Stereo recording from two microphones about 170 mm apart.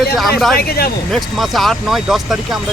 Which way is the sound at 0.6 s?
65° left (ahead or behind).